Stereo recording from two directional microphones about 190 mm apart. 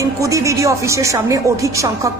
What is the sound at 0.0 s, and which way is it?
Speech, 15° right (ahead or behind).